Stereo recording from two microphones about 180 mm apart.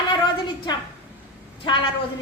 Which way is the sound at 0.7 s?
25° left (ahead or behind).